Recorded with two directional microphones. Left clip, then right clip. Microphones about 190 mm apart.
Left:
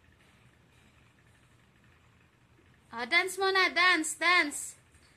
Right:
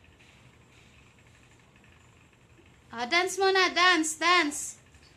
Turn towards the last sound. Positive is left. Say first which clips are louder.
# right 2 dB
turn(degrees=5)  # may be behind; listen again after turning